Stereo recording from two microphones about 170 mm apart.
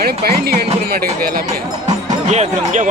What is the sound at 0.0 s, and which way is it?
Speech, 65° right (ahead or behind).